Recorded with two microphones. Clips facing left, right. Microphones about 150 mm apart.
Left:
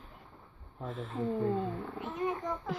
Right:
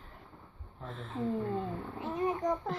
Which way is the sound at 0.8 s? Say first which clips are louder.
Left 1 dB; 5° left (ahead or behind).